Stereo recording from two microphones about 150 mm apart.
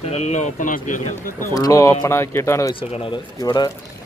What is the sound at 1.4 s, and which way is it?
Speech, 20° left (ahead or behind).